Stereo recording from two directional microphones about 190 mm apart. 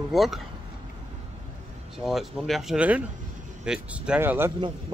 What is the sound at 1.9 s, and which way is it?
Speech, centre (ahead or behind).